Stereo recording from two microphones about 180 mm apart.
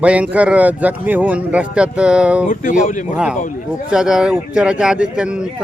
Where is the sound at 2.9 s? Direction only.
45° left (ahead or behind).